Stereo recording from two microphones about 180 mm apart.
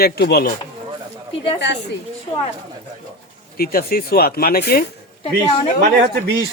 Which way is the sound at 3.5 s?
55° left (ahead or behind).